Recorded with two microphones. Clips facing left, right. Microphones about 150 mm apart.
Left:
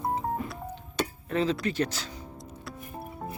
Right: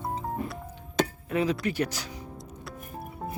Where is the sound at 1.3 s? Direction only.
10° right (ahead or behind).